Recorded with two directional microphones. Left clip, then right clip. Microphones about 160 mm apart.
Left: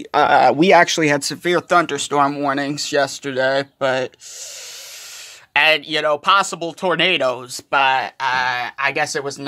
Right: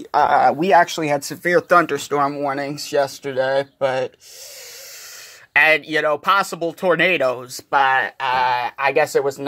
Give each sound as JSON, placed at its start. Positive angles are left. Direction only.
{"t": 0.3, "sound": "speech", "side_deg": 90}
{"t": 1.2, "sound": "speech", "side_deg": 25}
{"t": 1.5, "sound": "speech", "side_deg": 5}
{"t": 2.2, "sound": "speech", "side_deg": 35}
{"t": 5.5, "sound": "speech", "side_deg": 0}
{"t": 7.7, "sound": "speech", "side_deg": 20}